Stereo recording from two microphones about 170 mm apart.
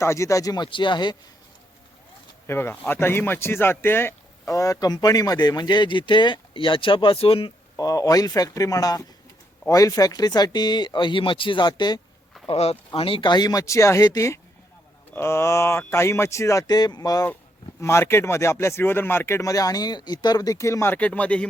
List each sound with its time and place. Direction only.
0.0 s speech: 15° left (ahead or behind)
2.5 s speech: 15° left (ahead or behind); by 7.5 s 35° left (ahead or behind)
7.8 s speech: 20° left (ahead or behind)
12.5 s speech: 35° left (ahead or behind); by 21.4 s 5° left (ahead or behind)